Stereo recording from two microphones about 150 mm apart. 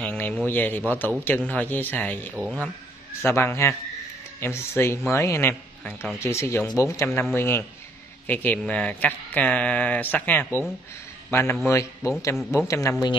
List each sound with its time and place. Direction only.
0.0 s a sound: 10° left (ahead or behind)
0.5 s speech: 10° left (ahead or behind)
2.3 s speech: 10° right (ahead or behind)
3.2 s a man's voice: 15° left (ahead or behind)